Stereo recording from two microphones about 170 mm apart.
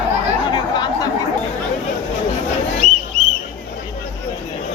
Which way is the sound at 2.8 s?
40° right (ahead or behind).